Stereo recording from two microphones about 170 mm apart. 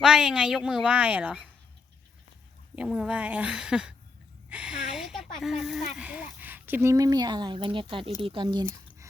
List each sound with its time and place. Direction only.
0.0 s a woman's voice: 5° right (ahead or behind)
2.7 s a woman's voice: 5° right (ahead or behind)
4.4 s a sound: 5° right (ahead or behind)
5.4 s speech: centre (ahead or behind); by 8.6 s 30° right (ahead or behind)